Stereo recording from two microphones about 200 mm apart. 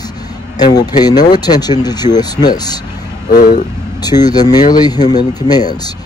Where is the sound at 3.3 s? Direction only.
40° left (ahead or behind).